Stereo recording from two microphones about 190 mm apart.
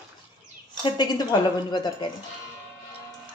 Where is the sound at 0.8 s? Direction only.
20° left (ahead or behind).